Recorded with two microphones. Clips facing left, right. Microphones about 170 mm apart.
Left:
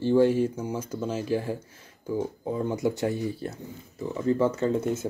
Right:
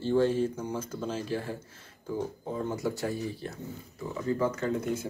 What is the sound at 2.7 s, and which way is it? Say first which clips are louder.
Speech: left 5 dB; 20° left (ahead or behind).